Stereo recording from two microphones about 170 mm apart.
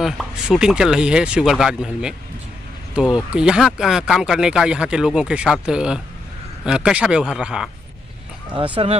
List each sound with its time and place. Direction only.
0.0 s speech: centre (ahead or behind)
8.8 s speech: 35° right (ahead or behind)